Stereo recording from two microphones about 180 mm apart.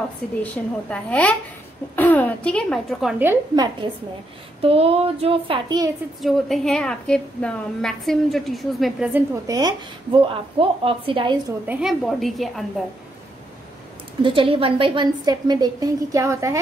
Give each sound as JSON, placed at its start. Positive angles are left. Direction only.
{"t": 0.4, "sound": "a woman's voice", "side_deg": 5}
{"t": 3.5, "sound": "a woman's voice", "side_deg": -25}
{"t": 4.6, "sound": "child singing", "side_deg": -35}
{"t": 6.2, "sound": "a woman's voice", "side_deg": 0}
{"t": 9.1, "sound": "a woman's voice", "side_deg": -20}
{"t": 11.6, "sound": "a woman's voice", "side_deg": -5}
{"t": 14.2, "sound": "a woman's voice", "side_deg": -30}